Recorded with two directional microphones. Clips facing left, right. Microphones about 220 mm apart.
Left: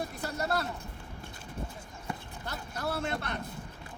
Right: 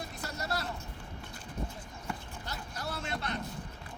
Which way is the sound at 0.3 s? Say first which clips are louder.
Left 5 dB; 55° left (ahead or behind).